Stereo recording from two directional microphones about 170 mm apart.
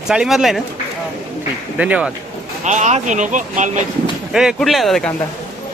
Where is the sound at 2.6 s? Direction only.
45° right (ahead or behind).